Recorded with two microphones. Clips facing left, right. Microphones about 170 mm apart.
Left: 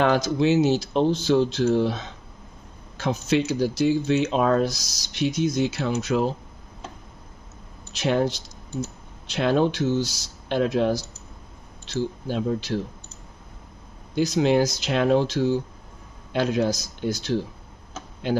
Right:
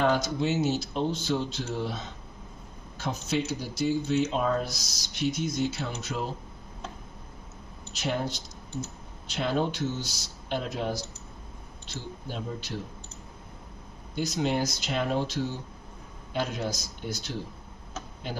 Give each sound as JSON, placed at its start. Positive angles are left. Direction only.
{"t": 0.0, "sound": "speech", "side_deg": 90}
{"t": 7.9, "sound": "speech", "side_deg": 90}
{"t": 14.1, "sound": "speech", "side_deg": 90}